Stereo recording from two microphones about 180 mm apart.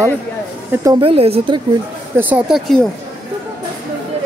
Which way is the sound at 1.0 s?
30° right (ahead or behind).